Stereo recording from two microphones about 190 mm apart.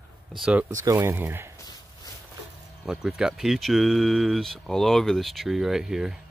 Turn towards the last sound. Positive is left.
turn(degrees=0)  # may be behind; listen again after turning